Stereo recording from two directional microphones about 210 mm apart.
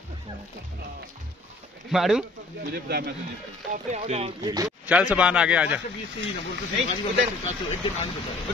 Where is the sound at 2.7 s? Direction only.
50° right (ahead or behind).